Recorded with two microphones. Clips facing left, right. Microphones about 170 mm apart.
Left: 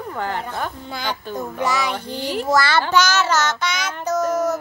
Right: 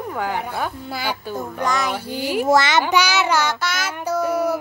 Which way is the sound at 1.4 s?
5° left (ahead or behind).